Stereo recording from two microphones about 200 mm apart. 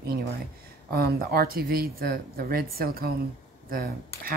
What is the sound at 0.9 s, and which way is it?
Speech, 50° right (ahead or behind).